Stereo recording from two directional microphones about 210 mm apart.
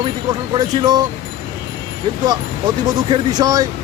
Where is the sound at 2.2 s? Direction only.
20° right (ahead or behind).